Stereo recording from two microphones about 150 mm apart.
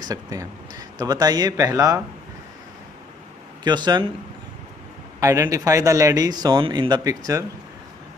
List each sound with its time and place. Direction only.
0.0 s speech: 25° right (ahead or behind)
3.6 s speech: 30° right (ahead or behind)
5.2 s speech: 20° right (ahead or behind)